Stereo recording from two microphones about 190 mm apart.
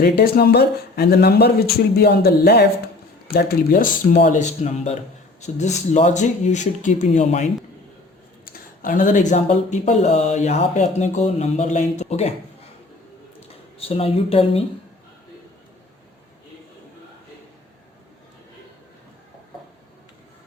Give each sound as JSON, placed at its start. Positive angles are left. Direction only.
{"t": 0.0, "sound": "speech", "side_deg": 50}
{"t": 8.8, "sound": "speech", "side_deg": 45}
{"t": 13.7, "sound": "speech", "side_deg": 30}